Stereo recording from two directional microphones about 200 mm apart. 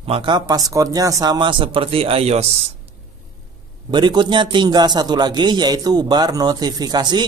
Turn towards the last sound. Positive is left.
turn(degrees=-20)  # may be behind; listen again after turning